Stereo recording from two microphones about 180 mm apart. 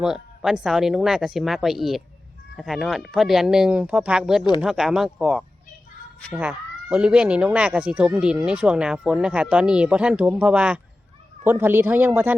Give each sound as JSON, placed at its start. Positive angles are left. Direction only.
{"t": 0.0, "sound": "speech", "side_deg": -5}
{"t": 6.4, "sound": "speech", "side_deg": -5}